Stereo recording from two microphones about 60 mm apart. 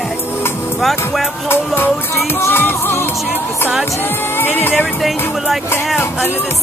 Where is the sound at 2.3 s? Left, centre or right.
Left.